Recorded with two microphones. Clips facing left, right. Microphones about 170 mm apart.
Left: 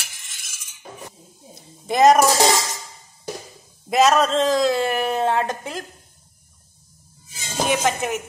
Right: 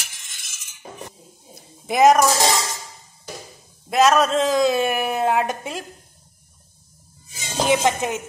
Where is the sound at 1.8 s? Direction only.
10° right (ahead or behind).